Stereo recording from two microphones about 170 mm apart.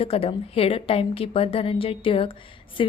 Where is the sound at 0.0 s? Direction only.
35° left (ahead or behind).